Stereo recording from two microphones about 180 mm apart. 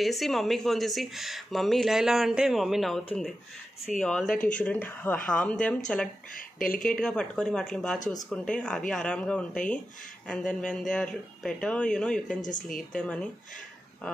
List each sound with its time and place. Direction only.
0.0 s speech: centre (ahead or behind)
4.4 s speech: 45° left (ahead or behind)
4.6 s speech: 10° left (ahead or behind)
6.3 s speech: 50° left (ahead or behind)
6.8 s speech: 5° left (ahead or behind)
12.3 s speech: 45° left (ahead or behind)
12.6 s speech: 5° left (ahead or behind)